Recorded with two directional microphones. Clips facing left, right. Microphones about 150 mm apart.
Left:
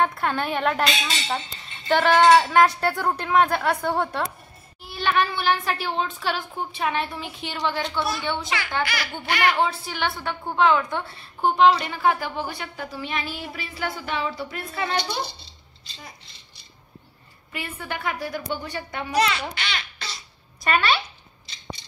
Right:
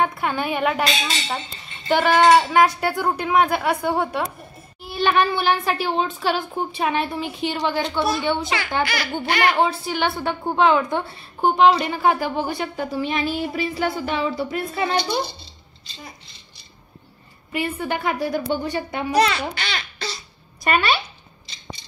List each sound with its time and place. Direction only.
0.0 s speech: 5° right (ahead or behind)
1.9 s speech: 10° right (ahead or behind)
4.8 s speech: 20° right (ahead or behind)
8.8 s speech: 30° right (ahead or behind)
9.6 s speech: 15° right (ahead or behind)
17.5 s speech: 15° right (ahead or behind)
19.1 s a child's voice: 40° right (ahead or behind)
20.6 s speech: 10° right (ahead or behind)